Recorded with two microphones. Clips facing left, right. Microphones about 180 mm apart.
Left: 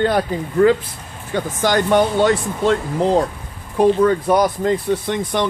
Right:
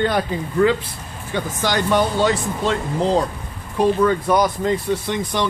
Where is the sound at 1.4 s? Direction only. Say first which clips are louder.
Left 4 dB; 50° left (ahead or behind).